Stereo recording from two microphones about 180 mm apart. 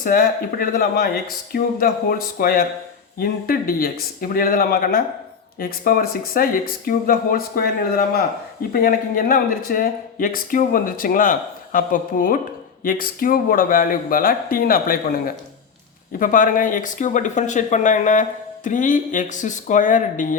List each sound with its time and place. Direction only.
0.0 s speech: 55° left (ahead or behind)